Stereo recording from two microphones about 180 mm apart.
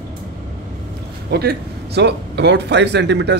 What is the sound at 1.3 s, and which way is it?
A man's voice, 65° right (ahead or behind).